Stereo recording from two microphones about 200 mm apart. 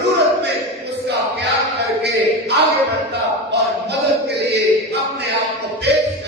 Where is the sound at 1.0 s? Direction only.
55° right (ahead or behind).